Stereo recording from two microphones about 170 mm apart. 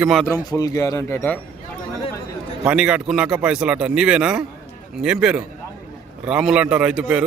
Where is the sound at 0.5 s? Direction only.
20° left (ahead or behind).